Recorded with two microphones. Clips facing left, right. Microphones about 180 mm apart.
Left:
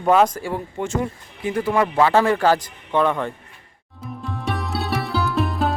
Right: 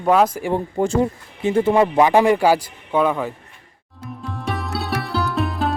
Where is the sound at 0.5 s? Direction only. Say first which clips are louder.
Right 9 dB; 30° right (ahead or behind); by 3.3 s 5° right (ahead or behind).